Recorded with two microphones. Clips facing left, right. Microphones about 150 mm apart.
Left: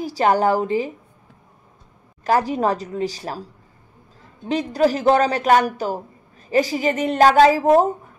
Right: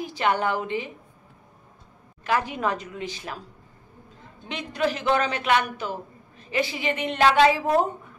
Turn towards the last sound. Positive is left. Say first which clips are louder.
# left 6 dB
turn(degrees=40)  # may be behind; listen again after turning